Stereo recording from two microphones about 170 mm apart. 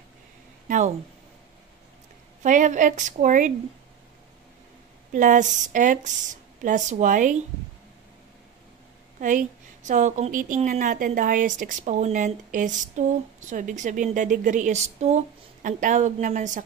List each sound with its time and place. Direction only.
0.7 s speech: 45° right (ahead or behind)
2.4 s a woman's voice: 45° right (ahead or behind)
5.1 s a woman's voice: 50° right (ahead or behind)
9.8 s a woman's voice: 45° right (ahead or behind)